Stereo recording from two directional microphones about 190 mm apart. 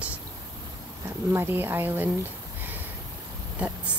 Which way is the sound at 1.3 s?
10° right (ahead or behind).